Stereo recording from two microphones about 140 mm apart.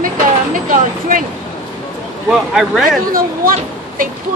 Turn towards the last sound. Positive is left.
turn(degrees=-85)